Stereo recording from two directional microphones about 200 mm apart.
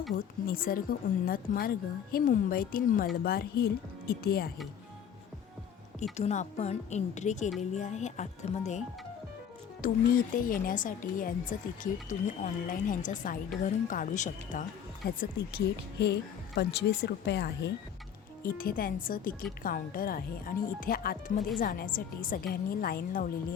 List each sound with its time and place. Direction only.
0.1 s speech: 45° left (ahead or behind)
6.0 s a woman's voice: 35° left (ahead or behind)
9.8 s a woman's voice: 45° left (ahead or behind)
15.0 s speech: 50° left (ahead or behind)
18.4 s speech: 45° left (ahead or behind)